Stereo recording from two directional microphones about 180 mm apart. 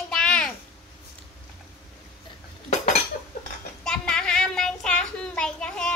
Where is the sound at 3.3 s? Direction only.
50° left (ahead or behind).